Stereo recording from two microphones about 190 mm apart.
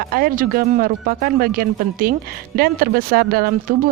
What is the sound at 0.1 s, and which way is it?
A woman's voice, 50° right (ahead or behind).